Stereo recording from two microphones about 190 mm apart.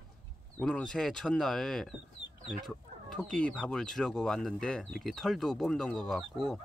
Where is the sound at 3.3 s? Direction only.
5° left (ahead or behind).